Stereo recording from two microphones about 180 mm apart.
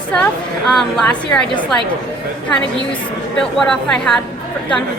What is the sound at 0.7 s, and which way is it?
Speech, centre (ahead or behind).